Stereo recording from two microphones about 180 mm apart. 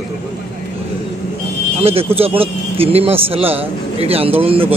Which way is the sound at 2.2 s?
30° right (ahead or behind).